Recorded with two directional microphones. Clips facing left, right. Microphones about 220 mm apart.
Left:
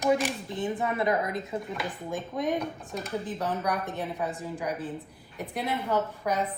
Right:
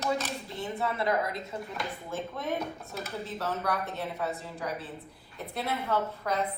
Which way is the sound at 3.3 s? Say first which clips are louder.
Left 1 dB; 15° left (ahead or behind).